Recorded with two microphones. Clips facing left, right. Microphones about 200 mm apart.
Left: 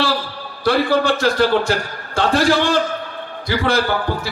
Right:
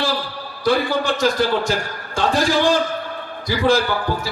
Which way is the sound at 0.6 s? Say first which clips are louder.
Left 3 dB; 65° left (ahead or behind).